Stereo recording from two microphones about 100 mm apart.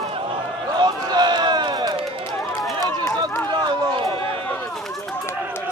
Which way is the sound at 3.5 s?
50° right (ahead or behind).